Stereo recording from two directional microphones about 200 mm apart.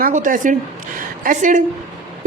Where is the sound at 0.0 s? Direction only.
40° right (ahead or behind).